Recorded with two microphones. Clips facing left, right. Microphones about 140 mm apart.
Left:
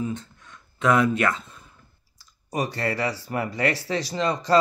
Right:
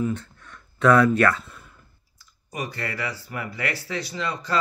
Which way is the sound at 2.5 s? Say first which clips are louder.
Left 5 dB; 35° left (ahead or behind).